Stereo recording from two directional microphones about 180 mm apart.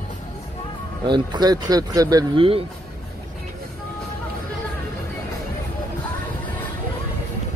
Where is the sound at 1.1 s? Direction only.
20° right (ahead or behind).